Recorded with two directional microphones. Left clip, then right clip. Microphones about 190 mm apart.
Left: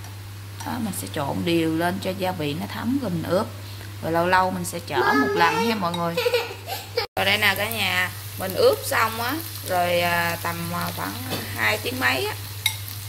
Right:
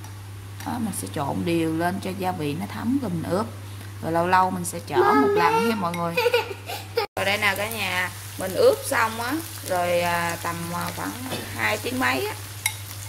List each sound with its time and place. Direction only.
0.7 s a woman's voice: 5° right (ahead or behind)
6.3 s speech: 50° right (ahead or behind)
7.2 s speech: 5° right (ahead or behind)